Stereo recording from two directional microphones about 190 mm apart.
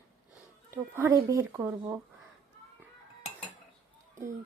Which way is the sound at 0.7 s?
15° right (ahead or behind).